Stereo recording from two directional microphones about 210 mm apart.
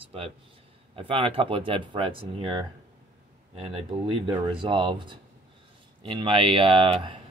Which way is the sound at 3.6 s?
25° right (ahead or behind).